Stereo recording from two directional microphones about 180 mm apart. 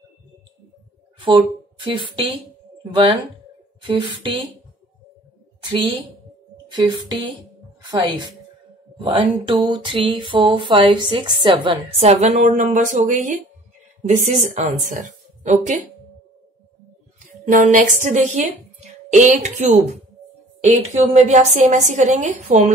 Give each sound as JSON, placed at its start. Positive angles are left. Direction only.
{"t": 1.2, "sound": "a woman's voice", "side_deg": -25}
{"t": 5.6, "sound": "a sound", "side_deg": -25}
{"t": 6.7, "sound": "speech", "side_deg": -25}
{"t": 9.5, "sound": "a woman's voice", "side_deg": -25}
{"t": 17.5, "sound": "a woman's voice", "side_deg": -45}